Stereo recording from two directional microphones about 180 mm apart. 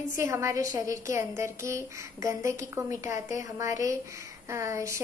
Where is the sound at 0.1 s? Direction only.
15° right (ahead or behind).